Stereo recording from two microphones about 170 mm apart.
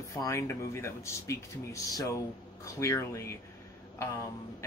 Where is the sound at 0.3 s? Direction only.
15° left (ahead or behind).